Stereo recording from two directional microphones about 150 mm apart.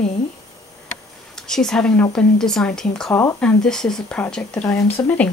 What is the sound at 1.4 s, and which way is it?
Speech, 5° left (ahead or behind).